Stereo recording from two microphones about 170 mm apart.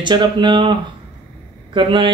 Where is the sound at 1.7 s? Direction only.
30° right (ahead or behind).